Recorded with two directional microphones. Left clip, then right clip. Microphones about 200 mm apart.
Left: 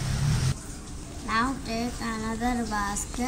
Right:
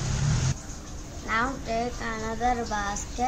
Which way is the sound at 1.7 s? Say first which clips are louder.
Right 2 dB; 20° right (ahead or behind).